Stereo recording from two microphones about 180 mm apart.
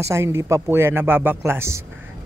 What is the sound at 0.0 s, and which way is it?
A man's voice, 15° right (ahead or behind).